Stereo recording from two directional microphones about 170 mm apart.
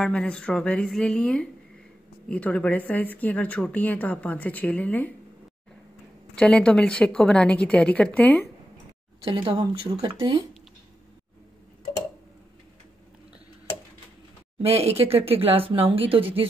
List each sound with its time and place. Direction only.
0.0 s a woman's voice: 5° left (ahead or behind)
6.3 s speech: 5° left (ahead or behind)
9.2 s speech: 30° right (ahead or behind)
14.6 s speech: 35° right (ahead or behind)